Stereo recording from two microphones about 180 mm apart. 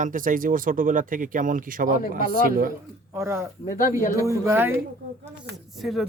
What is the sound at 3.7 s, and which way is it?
Speech, 50° left (ahead or behind).